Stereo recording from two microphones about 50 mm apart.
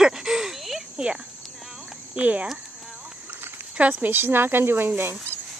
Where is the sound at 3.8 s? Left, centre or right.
Right.